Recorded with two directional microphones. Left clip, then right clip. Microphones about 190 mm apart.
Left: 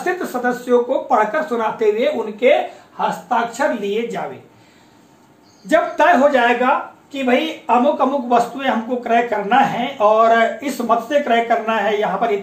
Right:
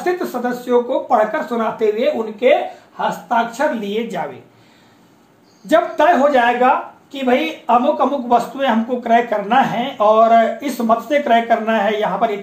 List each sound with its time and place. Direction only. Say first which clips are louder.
0.0 s speech: even; 30° right (ahead or behind)
3.0 s speech: right 1 dB; 10° right (ahead or behind)
3.5 s speech: even; 35° right (ahead or behind)
5.7 s speech: even; 30° right (ahead or behind)